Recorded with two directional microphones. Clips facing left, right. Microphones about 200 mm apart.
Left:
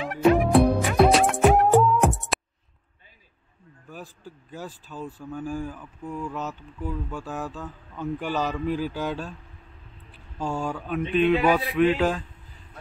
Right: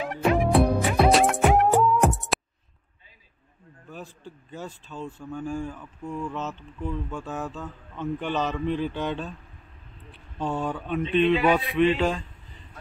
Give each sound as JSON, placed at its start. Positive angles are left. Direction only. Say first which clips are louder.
{"t": 0.2, "sound": "music", "louder": "left 3 dB", "side_deg": 0}
{"t": 3.9, "sound": "speech", "louder": "even", "side_deg": 0}